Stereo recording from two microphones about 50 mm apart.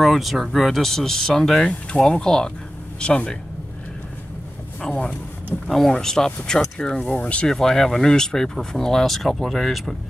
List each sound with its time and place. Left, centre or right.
0.0 s speech: centre; by 3.3 s left
4.8 s speech: centre
7.4 s speech: centre